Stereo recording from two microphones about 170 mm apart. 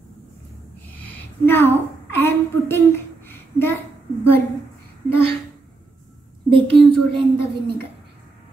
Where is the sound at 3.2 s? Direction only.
15° left (ahead or behind).